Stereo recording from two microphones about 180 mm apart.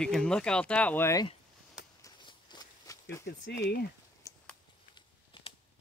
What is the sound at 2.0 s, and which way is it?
Walk, 20° left (ahead or behind).